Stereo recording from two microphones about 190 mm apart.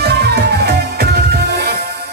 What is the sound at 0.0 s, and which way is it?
Music, 60° right (ahead or behind).